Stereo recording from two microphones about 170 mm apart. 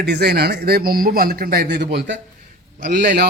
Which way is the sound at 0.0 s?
75° right (ahead or behind).